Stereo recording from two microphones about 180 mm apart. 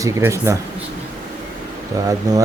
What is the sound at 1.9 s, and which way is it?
Speech, 20° right (ahead or behind).